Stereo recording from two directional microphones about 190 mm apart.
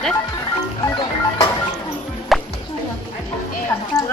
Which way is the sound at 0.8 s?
25° left (ahead or behind).